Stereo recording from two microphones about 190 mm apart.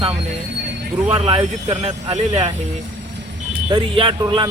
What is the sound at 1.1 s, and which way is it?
Speech, 30° right (ahead or behind).